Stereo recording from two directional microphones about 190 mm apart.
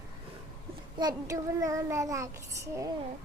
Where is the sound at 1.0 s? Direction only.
15° right (ahead or behind).